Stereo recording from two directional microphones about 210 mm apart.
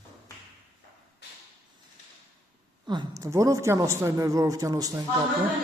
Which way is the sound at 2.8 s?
20° right (ahead or behind).